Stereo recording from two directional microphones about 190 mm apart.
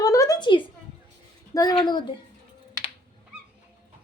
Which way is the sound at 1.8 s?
25° left (ahead or behind).